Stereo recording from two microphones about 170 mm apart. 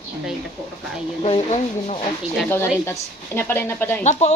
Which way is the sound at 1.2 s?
40° left (ahead or behind).